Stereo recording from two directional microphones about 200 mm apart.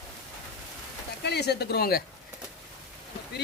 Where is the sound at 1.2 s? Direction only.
55° left (ahead or behind).